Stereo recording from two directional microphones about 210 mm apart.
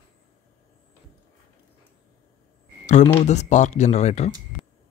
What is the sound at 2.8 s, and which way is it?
Speech, 35° left (ahead or behind).